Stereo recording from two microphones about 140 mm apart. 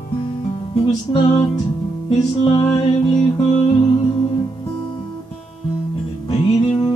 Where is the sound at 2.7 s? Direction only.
45° left (ahead or behind).